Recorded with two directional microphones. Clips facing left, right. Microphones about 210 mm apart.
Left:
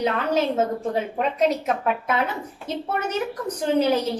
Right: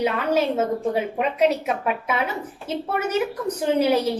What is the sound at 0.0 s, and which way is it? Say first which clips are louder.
A woman's voice: right 1 dB; 10° right (ahead or behind).